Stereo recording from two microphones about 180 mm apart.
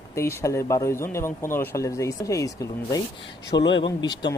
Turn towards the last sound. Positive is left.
turn(degrees=25)  # may be behind; listen again after turning